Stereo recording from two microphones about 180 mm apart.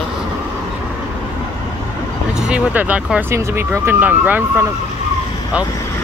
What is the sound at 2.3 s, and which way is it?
Speech, 5° right (ahead or behind).